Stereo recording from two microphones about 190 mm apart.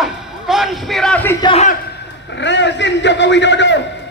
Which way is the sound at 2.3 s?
70° left (ahead or behind).